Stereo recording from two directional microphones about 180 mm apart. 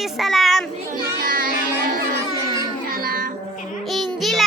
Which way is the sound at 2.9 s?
55° right (ahead or behind).